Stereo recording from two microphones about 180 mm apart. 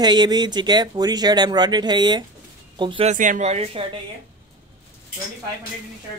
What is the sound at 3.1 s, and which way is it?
Speech, 45° right (ahead or behind).